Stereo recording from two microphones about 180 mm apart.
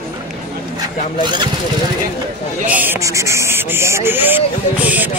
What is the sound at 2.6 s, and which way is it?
Speech, 10° right (ahead or behind).